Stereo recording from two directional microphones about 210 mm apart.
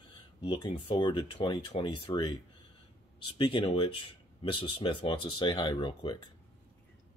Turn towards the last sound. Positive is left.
turn(degrees=20)  # may be behind; listen again after turning